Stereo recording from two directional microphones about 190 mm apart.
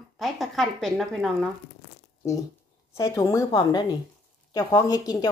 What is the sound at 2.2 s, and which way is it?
A woman's voice, 15° left (ahead or behind).